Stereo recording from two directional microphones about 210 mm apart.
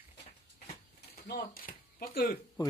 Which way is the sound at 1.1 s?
45° left (ahead or behind).